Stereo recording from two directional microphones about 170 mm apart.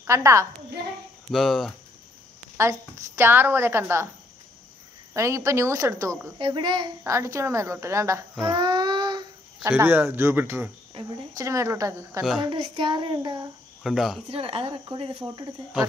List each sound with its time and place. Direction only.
0.0 s a woman's voice: 20° right (ahead or behind)
1.3 s speech: centre (ahead or behind)
2.6 s a woman's voice: 15° right (ahead or behind)
5.1 s a woman's voice: 15° right (ahead or behind)
6.3 s speech: 30° right (ahead or behind)
7.0 s a woman's voice: 15° right (ahead or behind)
8.5 s child singing: 25° right (ahead or behind)
9.6 s a woman's voice: 10° right (ahead or behind)
12.4 s speech: 30° right (ahead or behind)
13.8 s speech: centre (ahead or behind)
14.3 s speech: 35° right (ahead or behind)